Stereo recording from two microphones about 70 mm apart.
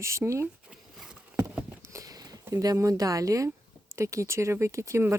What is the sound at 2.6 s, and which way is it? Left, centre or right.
A woman's voice, right.